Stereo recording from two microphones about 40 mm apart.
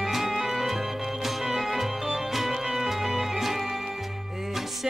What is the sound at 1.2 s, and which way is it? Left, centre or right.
Music, centre.